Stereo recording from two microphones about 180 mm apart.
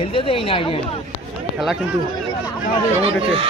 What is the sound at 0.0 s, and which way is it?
Speech, 30° left (ahead or behind).